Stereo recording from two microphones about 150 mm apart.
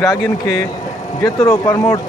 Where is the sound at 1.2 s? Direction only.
20° left (ahead or behind).